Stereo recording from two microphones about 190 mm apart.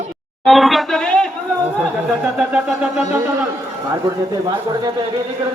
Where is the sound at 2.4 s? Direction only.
5° right (ahead or behind).